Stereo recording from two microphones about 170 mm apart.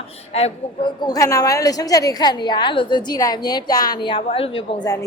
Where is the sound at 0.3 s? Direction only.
40° left (ahead or behind).